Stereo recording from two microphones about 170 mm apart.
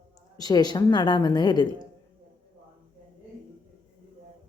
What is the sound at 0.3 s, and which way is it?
A woman's voice, 20° left (ahead or behind).